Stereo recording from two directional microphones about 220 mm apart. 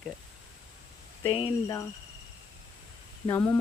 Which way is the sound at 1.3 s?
25° left (ahead or behind).